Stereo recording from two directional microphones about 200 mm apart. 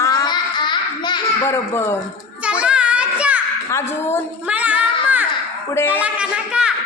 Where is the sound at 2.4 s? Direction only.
5° right (ahead or behind).